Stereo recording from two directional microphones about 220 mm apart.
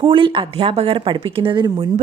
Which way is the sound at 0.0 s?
25° right (ahead or behind).